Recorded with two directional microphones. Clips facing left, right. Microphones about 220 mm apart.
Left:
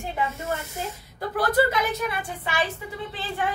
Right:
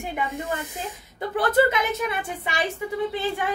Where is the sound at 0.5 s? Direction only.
15° right (ahead or behind).